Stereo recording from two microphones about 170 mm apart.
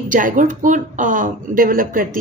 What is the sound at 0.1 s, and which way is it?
A woman's voice, 50° right (ahead or behind).